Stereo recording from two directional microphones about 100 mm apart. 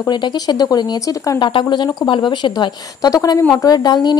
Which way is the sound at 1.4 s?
50° left (ahead or behind).